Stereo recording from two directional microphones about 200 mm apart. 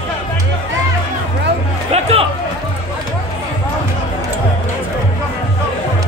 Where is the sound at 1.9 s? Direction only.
30° right (ahead or behind).